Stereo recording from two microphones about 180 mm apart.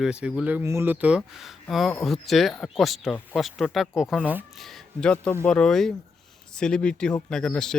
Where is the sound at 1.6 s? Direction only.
Centre (ahead or behind).